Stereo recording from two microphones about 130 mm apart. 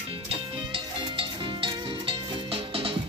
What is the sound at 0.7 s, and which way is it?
Music, 45° right (ahead or behind).